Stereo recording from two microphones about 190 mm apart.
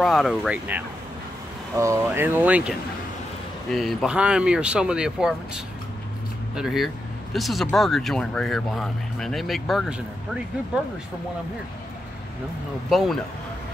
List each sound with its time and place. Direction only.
0.0 s speech: centre (ahead or behind)
3.7 s speech: centre (ahead or behind)
12.9 s speech: centre (ahead or behind)